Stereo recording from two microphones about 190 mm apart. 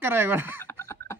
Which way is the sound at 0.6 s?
15° left (ahead or behind).